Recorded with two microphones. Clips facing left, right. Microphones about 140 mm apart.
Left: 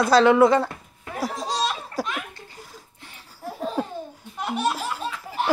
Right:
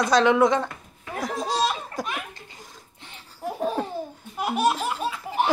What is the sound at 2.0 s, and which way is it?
Chuckle, 5° left (ahead or behind).